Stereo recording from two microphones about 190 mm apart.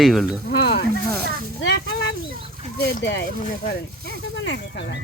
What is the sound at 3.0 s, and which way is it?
Speech, 65° left (ahead or behind).